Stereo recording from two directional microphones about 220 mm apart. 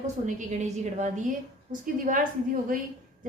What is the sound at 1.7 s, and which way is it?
Speech, 35° right (ahead or behind).